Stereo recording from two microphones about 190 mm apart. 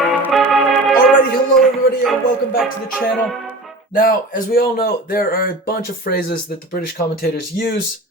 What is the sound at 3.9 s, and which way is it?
Speech, 50° left (ahead or behind).